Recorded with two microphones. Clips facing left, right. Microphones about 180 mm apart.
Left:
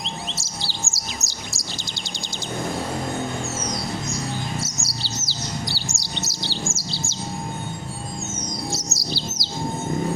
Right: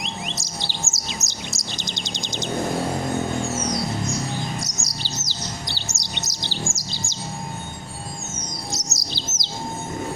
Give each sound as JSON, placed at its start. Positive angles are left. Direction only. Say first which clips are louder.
{"t": 0.0, "sound": "chirp", "louder": "right 1 dB", "side_deg": -15}
{"t": 4.6, "sound": "chirp", "louder": "left 1 dB", "side_deg": -15}
{"t": 6.7, "sound": "bird", "louder": "left 3 dB", "side_deg": -15}
{"t": 8.9, "sound": "chirp", "louder": "left 4 dB", "side_deg": -20}